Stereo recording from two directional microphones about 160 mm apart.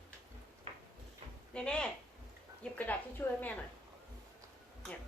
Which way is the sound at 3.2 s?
15° left (ahead or behind).